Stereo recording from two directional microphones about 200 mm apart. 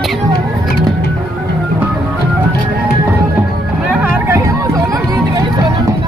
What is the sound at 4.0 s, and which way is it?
Music, 15° right (ahead or behind).